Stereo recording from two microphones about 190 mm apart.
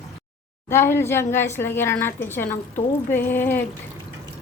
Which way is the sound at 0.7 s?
15° left (ahead or behind).